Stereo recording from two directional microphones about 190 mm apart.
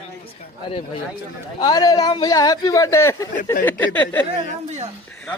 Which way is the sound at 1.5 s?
20° left (ahead or behind).